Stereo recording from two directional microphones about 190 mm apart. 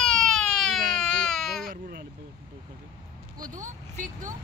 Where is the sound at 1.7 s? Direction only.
50° right (ahead or behind).